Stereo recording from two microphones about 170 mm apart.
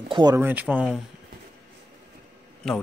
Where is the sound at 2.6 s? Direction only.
Centre (ahead or behind).